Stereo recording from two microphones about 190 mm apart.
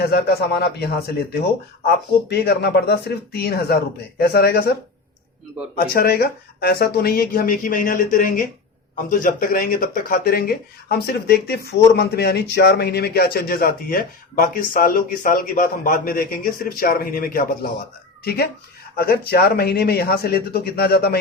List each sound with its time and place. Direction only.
0.0 s speech: 60° left (ahead or behind)
2.3 s speech: 60° left (ahead or behind)
18.9 s speech: 55° left (ahead or behind)